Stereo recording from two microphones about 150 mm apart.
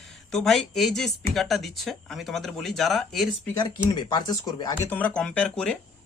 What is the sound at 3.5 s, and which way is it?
Speech, 30° left (ahead or behind).